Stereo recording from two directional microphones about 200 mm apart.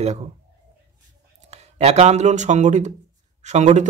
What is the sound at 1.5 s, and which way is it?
A man's voice, 30° right (ahead or behind).